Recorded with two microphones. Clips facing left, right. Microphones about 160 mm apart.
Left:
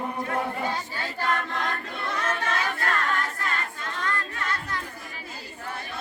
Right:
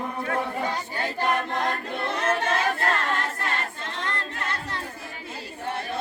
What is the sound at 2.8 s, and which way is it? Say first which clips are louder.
Choir: right 2 dB; 25° right (ahead or behind).